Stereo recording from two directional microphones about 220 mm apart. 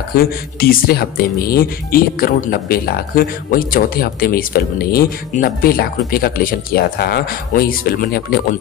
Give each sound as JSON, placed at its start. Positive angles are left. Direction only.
{"t": 0.1, "sound": "speech", "side_deg": 45}